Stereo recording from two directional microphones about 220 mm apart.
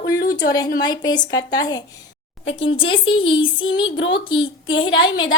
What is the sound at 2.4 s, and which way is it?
Speech, 60° left (ahead or behind).